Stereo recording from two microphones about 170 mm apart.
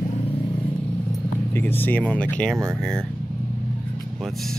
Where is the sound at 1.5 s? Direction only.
10° left (ahead or behind).